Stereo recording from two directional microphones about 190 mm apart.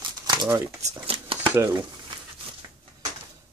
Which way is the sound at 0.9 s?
30° right (ahead or behind).